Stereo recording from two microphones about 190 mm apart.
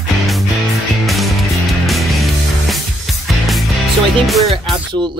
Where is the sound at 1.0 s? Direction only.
Centre (ahead or behind).